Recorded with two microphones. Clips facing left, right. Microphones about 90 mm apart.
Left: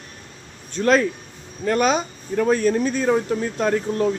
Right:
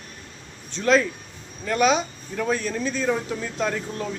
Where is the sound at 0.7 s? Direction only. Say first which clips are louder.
Left 2 dB; 50° left (ahead or behind).